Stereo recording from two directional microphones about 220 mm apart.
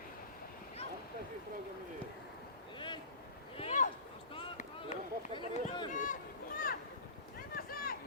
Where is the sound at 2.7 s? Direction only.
20° left (ahead or behind).